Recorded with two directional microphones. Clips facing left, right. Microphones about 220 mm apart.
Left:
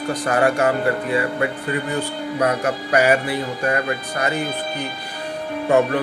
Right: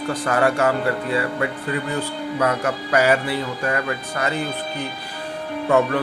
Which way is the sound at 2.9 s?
15° left (ahead or behind).